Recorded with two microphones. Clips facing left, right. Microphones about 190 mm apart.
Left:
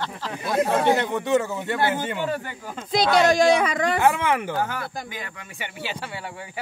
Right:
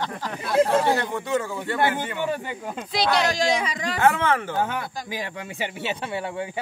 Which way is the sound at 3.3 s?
55° left (ahead or behind).